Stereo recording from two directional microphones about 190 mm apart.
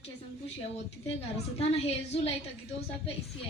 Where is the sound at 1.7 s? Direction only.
30° left (ahead or behind).